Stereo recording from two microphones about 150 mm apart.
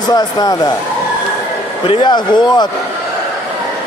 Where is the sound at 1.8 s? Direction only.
35° left (ahead or behind).